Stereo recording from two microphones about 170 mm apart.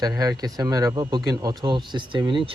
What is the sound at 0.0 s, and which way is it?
Speech, 20° right (ahead or behind).